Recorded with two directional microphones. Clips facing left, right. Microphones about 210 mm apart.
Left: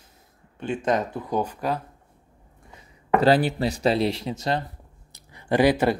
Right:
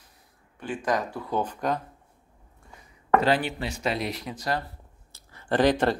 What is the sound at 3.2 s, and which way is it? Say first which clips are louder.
Speech: left 6 dB; 35° left (ahead or behind).